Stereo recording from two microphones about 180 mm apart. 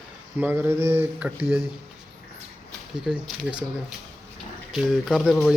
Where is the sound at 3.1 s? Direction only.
Centre (ahead or behind).